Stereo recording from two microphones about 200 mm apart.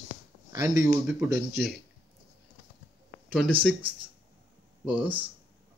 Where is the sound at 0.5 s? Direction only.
15° right (ahead or behind).